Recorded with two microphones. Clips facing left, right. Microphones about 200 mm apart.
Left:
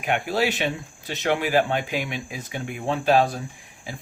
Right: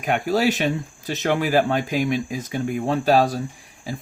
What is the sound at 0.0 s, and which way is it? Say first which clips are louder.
Speech: right 3 dB; 40° right (ahead or behind).